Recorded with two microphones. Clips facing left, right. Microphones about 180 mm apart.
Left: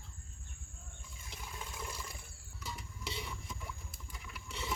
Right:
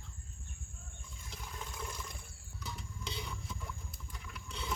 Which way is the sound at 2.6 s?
5° left (ahead or behind).